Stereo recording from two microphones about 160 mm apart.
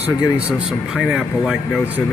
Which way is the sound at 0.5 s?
5° right (ahead or behind).